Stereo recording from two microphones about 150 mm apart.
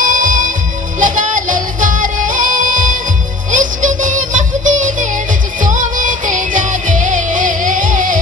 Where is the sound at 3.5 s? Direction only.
60° right (ahead or behind).